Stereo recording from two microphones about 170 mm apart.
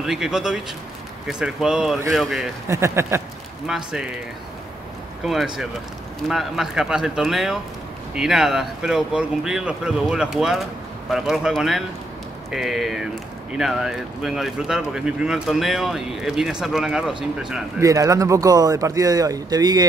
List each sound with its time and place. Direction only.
0.0 s speech: centre (ahead or behind)
2.7 s speech: 15° right (ahead or behind)
3.6 s speech: 5° right (ahead or behind)
5.2 s speech: centre (ahead or behind)
17.7 s speech: 20° right (ahead or behind)